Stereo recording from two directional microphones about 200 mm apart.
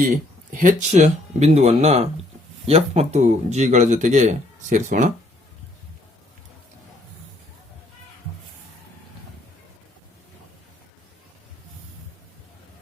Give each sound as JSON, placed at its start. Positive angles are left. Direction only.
{"t": 0.1, "sound": "speech", "side_deg": -40}